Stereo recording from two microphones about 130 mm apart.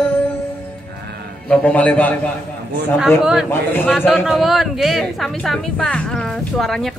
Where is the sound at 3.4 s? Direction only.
15° left (ahead or behind).